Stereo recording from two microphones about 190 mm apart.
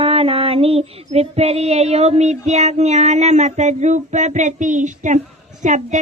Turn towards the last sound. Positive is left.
turn(degrees=-40)  # may be behind; listen again after turning